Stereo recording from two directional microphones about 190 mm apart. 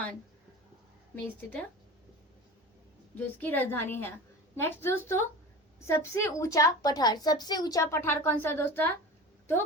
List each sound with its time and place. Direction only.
3.2 s a woman's voice: 10° left (ahead or behind)